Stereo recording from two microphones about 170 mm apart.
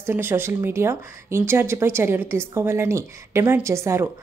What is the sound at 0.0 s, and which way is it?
Speech, 15° right (ahead or behind).